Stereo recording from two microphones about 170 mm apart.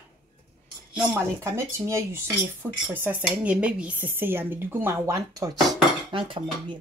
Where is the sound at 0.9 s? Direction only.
15° right (ahead or behind).